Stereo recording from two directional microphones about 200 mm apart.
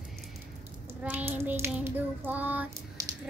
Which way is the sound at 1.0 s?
10° right (ahead or behind).